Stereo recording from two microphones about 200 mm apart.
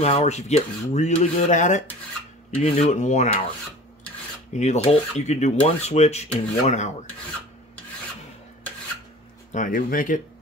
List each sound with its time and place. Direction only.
0.0 s speech: 35° left (ahead or behind)
4.6 s speech: 35° left (ahead or behind)
9.5 s speech: 40° left (ahead or behind)